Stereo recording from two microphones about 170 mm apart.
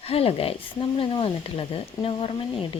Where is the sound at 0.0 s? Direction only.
35° left (ahead or behind).